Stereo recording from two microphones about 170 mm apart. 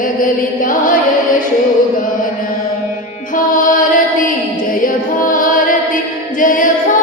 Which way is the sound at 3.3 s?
50° left (ahead or behind).